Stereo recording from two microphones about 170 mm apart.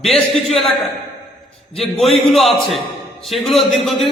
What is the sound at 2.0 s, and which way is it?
A man's voice, centre (ahead or behind).